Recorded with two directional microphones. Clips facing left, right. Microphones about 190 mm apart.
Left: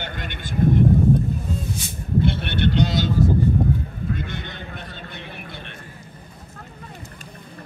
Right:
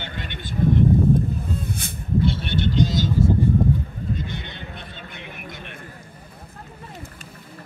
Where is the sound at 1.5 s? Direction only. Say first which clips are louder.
Even; 60° right (ahead or behind).